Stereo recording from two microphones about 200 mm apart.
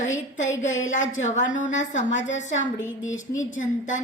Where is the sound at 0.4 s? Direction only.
70° left (ahead or behind).